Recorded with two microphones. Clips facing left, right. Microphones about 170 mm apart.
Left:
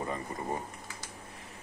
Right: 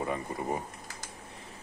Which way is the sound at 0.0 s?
10° right (ahead or behind).